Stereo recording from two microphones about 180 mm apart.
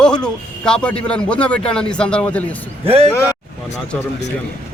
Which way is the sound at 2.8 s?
30° right (ahead or behind).